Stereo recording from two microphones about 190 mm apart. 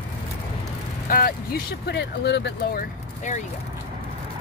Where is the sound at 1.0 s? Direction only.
50° left (ahead or behind).